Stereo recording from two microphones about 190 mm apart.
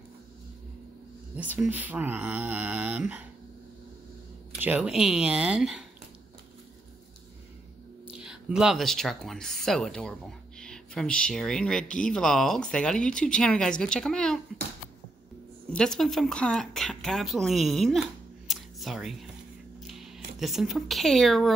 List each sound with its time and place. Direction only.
1.3 s speech: 5° right (ahead or behind)
4.6 s speech: 10° right (ahead or behind)
8.2 s speech: 5° right (ahead or behind)
15.7 s speech: 5° left (ahead or behind)
18.5 s a sound: centre (ahead or behind)
19.8 s speech: centre (ahead or behind)